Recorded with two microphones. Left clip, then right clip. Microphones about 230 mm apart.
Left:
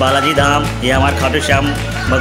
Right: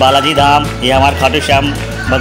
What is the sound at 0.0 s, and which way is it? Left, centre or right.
Speech, centre.